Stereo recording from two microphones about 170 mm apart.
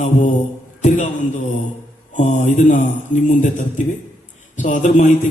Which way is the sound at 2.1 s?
45° left (ahead or behind).